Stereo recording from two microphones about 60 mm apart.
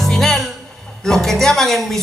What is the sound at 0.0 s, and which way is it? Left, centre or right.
Music, centre.